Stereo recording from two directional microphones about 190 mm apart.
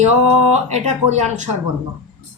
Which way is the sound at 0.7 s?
35° right (ahead or behind).